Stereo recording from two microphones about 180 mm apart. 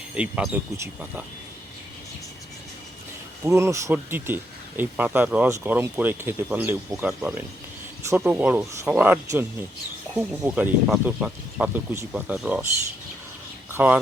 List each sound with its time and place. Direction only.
0.1 s speech: 5° right (ahead or behind)
3.4 s speech: 15° right (ahead or behind)
13.7 s speech: 10° right (ahead or behind)